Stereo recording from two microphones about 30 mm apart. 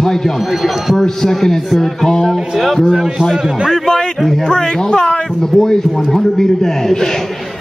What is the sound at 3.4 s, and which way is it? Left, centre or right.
Speech, right.